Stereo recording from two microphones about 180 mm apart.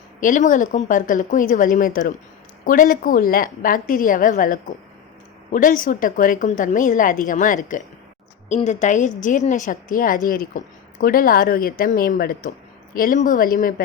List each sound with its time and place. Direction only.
0.2 s a woman's voice: 45° left (ahead or behind)